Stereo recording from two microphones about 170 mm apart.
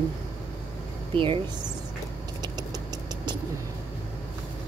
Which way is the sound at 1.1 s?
30° right (ahead or behind).